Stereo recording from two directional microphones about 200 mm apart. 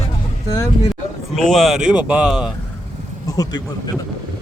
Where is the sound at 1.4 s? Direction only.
Centre (ahead or behind).